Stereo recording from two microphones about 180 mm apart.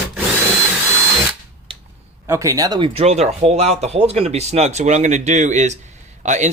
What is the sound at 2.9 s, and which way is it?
Speech, 40° right (ahead or behind).